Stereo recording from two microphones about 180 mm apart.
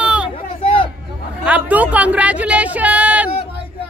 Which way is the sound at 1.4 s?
10° right (ahead or behind).